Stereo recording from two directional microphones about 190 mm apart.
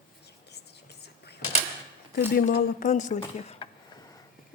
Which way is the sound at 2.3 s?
50° left (ahead or behind).